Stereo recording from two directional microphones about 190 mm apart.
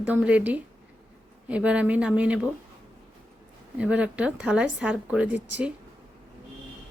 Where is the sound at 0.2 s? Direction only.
5° right (ahead or behind).